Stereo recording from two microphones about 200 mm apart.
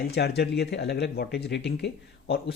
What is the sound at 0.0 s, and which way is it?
Speech, 55° left (ahead or behind).